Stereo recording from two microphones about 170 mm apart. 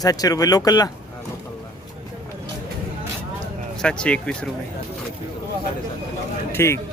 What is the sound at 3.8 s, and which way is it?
Speech, 5° left (ahead or behind).